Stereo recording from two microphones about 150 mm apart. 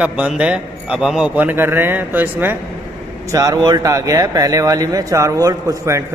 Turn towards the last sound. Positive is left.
turn(degrees=-20)  # may be behind; listen again after turning